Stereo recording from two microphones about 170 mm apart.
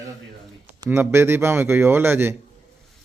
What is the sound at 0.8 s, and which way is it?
Speech, 15° right (ahead or behind).